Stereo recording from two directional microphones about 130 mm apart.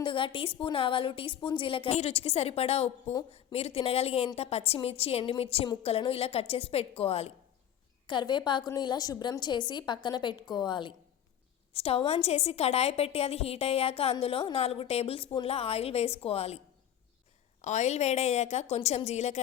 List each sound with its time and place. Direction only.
0.0 s a woman's voice: 40° left (ahead or behind)
8.0 s a woman's voice: 35° left (ahead or behind)
11.7 s a woman's voice: 50° left (ahead or behind)
17.6 s a woman's voice: 60° left (ahead or behind)